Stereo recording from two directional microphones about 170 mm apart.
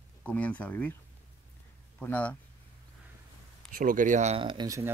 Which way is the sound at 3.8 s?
50° right (ahead or behind).